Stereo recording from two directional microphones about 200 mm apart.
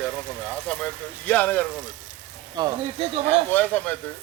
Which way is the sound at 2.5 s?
20° right (ahead or behind).